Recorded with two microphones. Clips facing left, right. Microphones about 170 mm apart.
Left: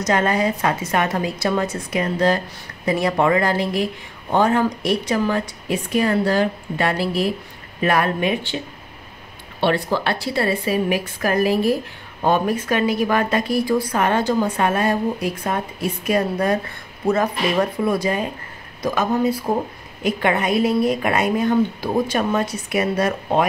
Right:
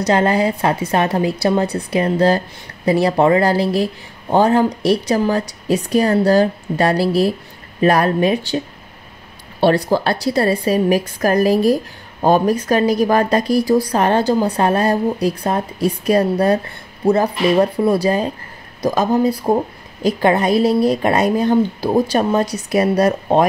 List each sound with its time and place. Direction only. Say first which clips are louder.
0.0 s a woman's voice: right 4 dB; 30° right (ahead or behind)
9.6 s a woman's voice: right 5 dB; 40° right (ahead or behind)